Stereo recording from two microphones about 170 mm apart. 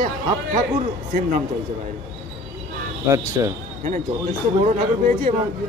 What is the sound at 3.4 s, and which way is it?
Speech, 20° right (ahead or behind).